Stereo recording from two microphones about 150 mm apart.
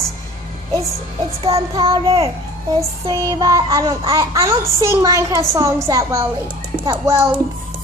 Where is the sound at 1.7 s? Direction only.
30° right (ahead or behind).